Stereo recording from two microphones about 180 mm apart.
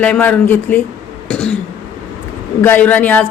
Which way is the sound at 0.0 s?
5° left (ahead or behind).